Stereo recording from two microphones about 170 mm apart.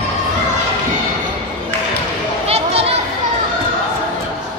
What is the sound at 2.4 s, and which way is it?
Children playing, 35° right (ahead or behind).